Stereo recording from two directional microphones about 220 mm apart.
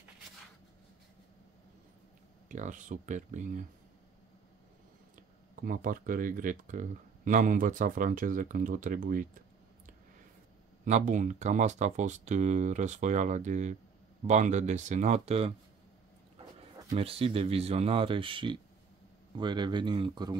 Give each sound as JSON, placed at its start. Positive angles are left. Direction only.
{"t": 2.4, "sound": "speech", "side_deg": -35}
{"t": 5.6, "sound": "speech", "side_deg": -40}
{"t": 10.9, "sound": "speech", "side_deg": -35}
{"t": 16.9, "sound": "speech", "side_deg": -25}